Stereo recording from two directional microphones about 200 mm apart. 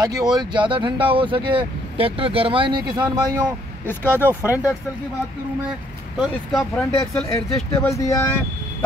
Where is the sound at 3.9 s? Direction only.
10° left (ahead or behind).